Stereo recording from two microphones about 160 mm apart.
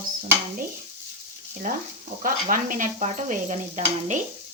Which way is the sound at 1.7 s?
60° right (ahead or behind).